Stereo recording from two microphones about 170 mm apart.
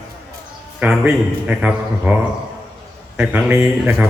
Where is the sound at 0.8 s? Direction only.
5° right (ahead or behind).